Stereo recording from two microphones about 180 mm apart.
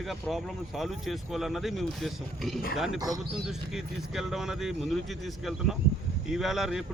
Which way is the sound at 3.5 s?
Centre (ahead or behind).